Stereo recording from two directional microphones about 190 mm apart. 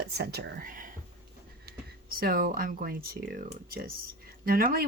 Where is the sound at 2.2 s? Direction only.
50° right (ahead or behind).